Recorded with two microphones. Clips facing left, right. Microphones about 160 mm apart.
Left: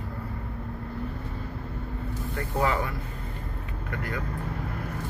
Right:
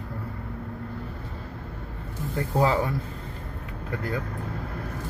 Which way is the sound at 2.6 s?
30° right (ahead or behind).